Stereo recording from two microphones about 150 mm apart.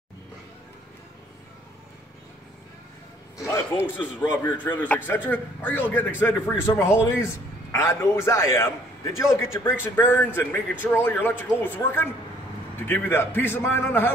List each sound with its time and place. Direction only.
3.3 s a man's voice: 20° left (ahead or behind)